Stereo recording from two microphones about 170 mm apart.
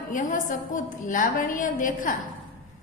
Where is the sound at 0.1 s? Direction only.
50° left (ahead or behind).